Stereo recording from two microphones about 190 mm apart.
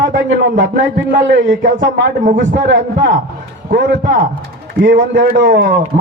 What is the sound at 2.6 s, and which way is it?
Speech, 70° right (ahead or behind).